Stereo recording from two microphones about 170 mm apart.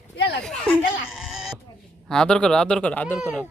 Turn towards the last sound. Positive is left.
turn(degrees=-5)  # may be behind; listen again after turning